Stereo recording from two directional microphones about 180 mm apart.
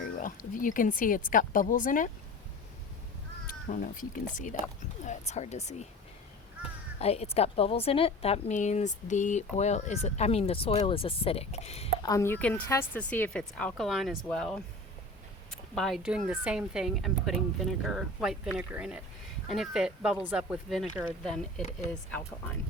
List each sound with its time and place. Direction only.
0.0 s a woman's voice: 50° left (ahead or behind)
3.4 s a woman's voice: 50° left (ahead or behind)
7.0 s a woman's voice: 35° left (ahead or behind)
12.0 s speech: 15° left (ahead or behind)
15.7 s speech: centre (ahead or behind)